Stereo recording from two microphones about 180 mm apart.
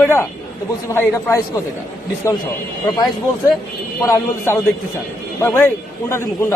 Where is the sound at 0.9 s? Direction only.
15° left (ahead or behind).